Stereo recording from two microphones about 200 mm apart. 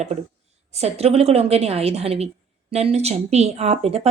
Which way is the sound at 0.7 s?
30° right (ahead or behind).